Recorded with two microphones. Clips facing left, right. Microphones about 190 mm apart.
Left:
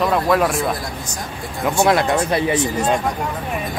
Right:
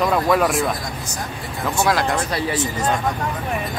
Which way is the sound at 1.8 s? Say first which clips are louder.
Left 4 dB; 25° left (ahead or behind).